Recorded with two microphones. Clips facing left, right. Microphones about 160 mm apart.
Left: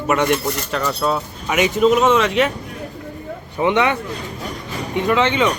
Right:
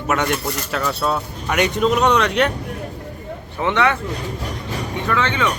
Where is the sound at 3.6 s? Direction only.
20° left (ahead or behind).